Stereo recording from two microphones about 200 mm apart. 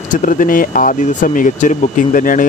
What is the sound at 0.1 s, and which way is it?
Speech, 40° left (ahead or behind).